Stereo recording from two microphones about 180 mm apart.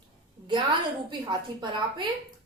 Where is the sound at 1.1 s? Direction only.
25° right (ahead or behind).